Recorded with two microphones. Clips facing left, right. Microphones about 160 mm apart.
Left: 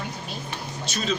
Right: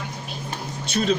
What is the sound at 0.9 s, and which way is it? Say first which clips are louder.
Speech: right 6 dB; 60° right (ahead or behind).